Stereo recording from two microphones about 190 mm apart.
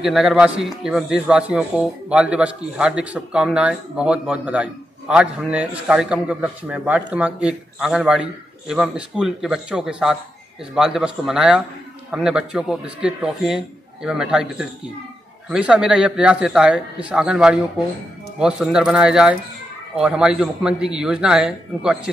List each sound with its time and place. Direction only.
0.0 s a man's voice: centre (ahead or behind)